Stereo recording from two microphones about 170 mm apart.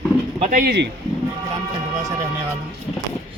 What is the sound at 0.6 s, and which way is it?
Speech, 70° right (ahead or behind).